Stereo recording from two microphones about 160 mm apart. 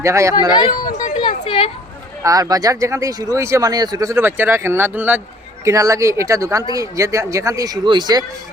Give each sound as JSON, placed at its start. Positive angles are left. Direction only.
{"t": 0.0, "sound": "speech", "side_deg": -20}
{"t": 0.5, "sound": "speech", "side_deg": 25}
{"t": 1.2, "sound": "a sound", "side_deg": 35}
{"t": 2.2, "sound": "speech", "side_deg": -20}